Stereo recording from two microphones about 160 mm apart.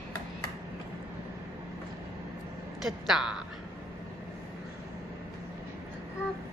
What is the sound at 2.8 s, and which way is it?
Speech, centre (ahead or behind).